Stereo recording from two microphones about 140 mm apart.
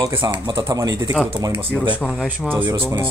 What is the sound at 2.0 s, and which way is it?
Speech, 5° left (ahead or behind).